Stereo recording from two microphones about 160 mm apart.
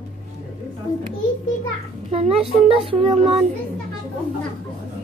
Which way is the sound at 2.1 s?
40° right (ahead or behind).